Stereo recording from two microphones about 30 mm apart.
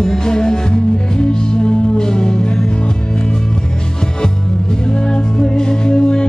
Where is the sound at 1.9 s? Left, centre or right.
Left.